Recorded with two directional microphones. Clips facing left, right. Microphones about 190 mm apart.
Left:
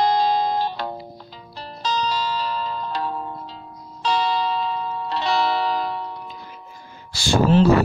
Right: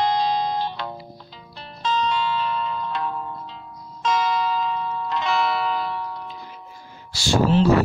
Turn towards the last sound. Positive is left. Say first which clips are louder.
# left 2 dB
turn(degrees=55)  # may be behind; listen again after turning